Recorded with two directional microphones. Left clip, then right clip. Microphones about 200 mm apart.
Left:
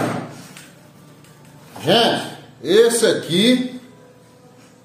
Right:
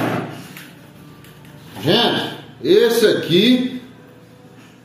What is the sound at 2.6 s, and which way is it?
Speech, 45° left (ahead or behind).